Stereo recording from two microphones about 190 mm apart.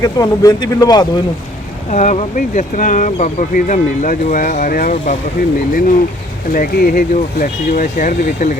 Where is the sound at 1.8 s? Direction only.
40° left (ahead or behind).